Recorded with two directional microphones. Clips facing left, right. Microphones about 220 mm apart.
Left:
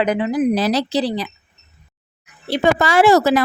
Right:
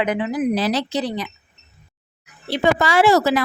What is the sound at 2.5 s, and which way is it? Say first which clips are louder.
Speech: left 2 dB; 45° left (ahead or behind).